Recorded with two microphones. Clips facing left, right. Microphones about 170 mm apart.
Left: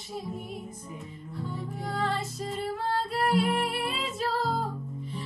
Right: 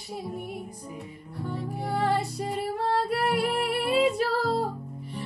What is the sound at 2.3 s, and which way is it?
Music, 65° right (ahead or behind).